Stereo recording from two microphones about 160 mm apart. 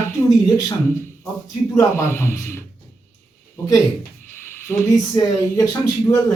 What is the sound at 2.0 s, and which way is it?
Speech, 15° left (ahead or behind).